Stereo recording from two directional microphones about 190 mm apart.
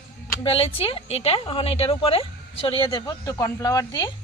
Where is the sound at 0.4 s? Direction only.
30° left (ahead or behind).